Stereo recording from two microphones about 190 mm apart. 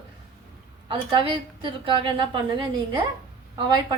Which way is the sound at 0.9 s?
25° right (ahead or behind).